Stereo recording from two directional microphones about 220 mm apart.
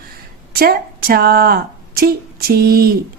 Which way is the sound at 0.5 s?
45° right (ahead or behind).